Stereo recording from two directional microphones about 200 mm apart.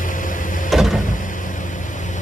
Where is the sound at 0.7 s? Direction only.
Centre (ahead or behind).